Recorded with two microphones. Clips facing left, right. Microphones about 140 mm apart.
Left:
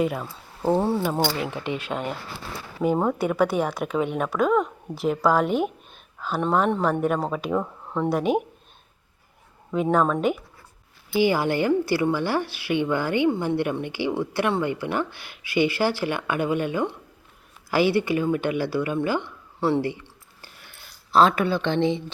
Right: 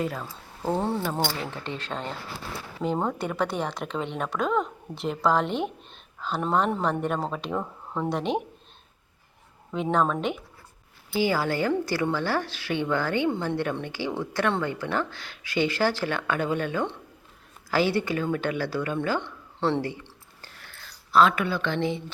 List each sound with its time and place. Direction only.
0.0 s speech: 15° left (ahead or behind)
9.7 s speech: 5° left (ahead or behind)
11.1 s speech: 15° left (ahead or behind)
20.4 s a sound: 15° left (ahead or behind)
21.1 s speech: 30° left (ahead or behind)